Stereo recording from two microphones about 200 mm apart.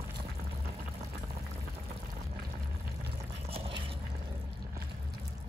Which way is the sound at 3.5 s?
30° right (ahead or behind).